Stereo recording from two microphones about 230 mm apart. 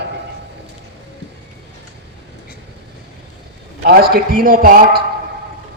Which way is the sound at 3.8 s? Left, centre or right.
Right.